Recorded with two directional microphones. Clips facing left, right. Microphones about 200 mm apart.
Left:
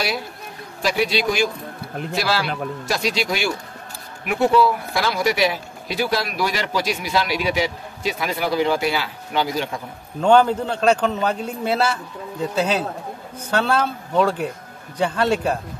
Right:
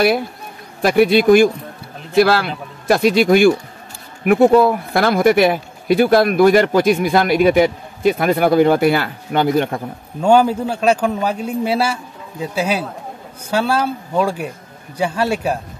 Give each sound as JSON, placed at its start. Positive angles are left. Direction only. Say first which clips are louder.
{"t": 0.8, "sound": "a man's voice", "louder": "right 9 dB", "side_deg": -55}
{"t": 10.2, "sound": "a man's voice", "louder": "right 2 dB", "side_deg": -10}